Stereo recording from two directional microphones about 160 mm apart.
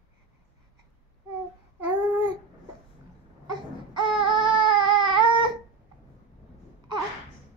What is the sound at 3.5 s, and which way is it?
Baby cry, 30° right (ahead or behind).